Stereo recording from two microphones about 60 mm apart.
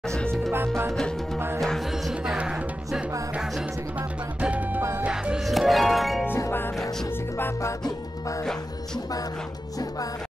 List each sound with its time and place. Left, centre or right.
0.5 s music: right
0.9 s music: centre
4.4 s music: right
5.4 s music: centre